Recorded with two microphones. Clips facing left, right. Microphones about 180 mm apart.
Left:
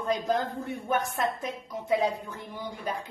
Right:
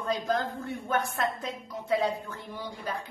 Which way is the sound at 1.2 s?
20° left (ahead or behind).